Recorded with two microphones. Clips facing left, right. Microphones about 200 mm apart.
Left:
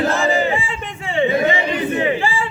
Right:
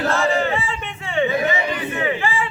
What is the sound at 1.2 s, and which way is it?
Crowd, 30° left (ahead or behind).